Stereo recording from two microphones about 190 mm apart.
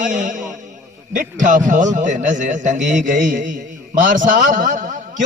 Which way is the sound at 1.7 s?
40° right (ahead or behind).